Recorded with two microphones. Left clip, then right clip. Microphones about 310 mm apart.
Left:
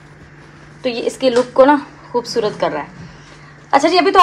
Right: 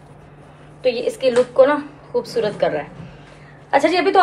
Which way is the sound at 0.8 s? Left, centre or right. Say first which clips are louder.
Left 1 dB; left.